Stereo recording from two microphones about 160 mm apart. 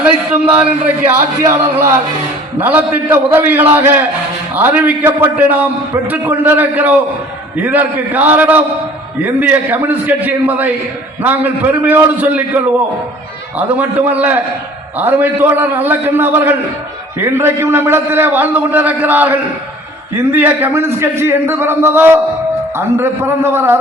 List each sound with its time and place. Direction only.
0.0 s a man's voice: 10° right (ahead or behind)
13.7 s a man's voice: 10° right (ahead or behind)